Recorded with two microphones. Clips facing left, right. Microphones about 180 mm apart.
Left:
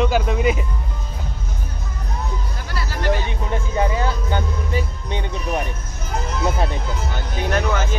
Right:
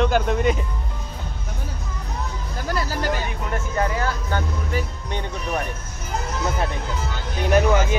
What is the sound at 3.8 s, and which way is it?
Speech, 20° left (ahead or behind).